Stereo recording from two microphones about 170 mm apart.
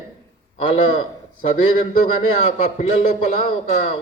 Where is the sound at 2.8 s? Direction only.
40° left (ahead or behind).